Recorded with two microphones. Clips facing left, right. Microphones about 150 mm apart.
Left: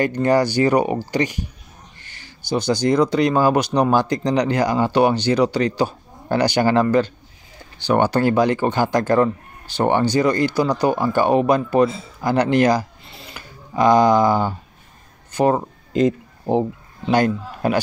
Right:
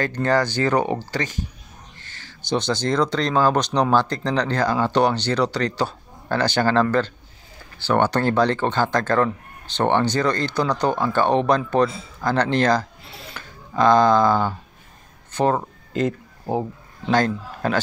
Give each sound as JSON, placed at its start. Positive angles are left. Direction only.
{"t": 0.0, "sound": "speech", "side_deg": 15}
{"t": 13.0, "sound": "speech", "side_deg": 0}
{"t": 13.4, "sound": "speech", "side_deg": 10}
{"t": 15.3, "sound": "a sound", "side_deg": 10}
{"t": 17.1, "sound": "speech", "side_deg": 15}